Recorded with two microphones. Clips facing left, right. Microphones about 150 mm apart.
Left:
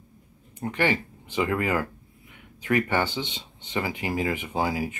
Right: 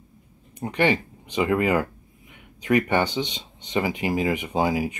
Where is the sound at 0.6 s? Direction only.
20° right (ahead or behind).